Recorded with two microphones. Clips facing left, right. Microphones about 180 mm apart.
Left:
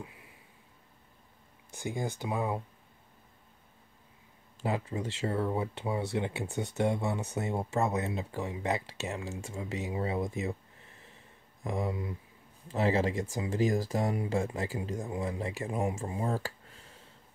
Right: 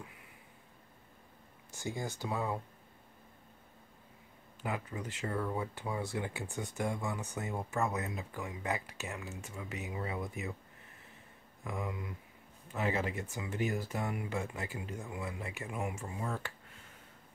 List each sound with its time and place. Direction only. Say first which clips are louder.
1.8 s speech: left 4 dB; 15° left (ahead or behind)
4.6 s speech: left 6 dB; 30° left (ahead or behind)
11.6 s speech: left 6 dB; 35° left (ahead or behind)